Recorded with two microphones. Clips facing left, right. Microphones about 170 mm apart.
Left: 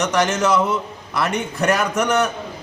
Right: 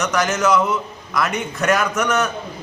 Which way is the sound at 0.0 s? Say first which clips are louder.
Left 1 dB; 30° left (ahead or behind).